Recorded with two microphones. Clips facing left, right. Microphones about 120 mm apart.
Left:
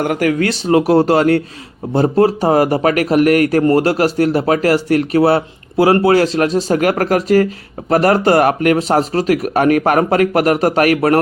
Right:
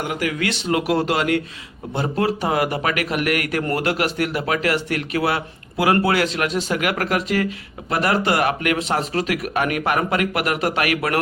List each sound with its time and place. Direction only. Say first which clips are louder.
0.0 s speech: left 8 dB; 50° left (ahead or behind)